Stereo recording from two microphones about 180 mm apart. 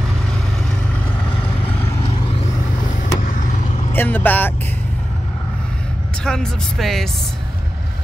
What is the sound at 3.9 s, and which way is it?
Speech, 10° left (ahead or behind).